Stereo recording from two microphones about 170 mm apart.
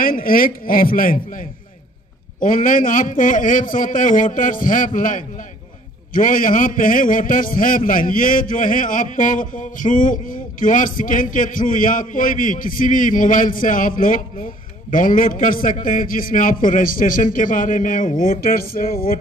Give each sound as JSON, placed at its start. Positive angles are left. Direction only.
{"t": 0.0, "sound": "a man's voice", "side_deg": 55}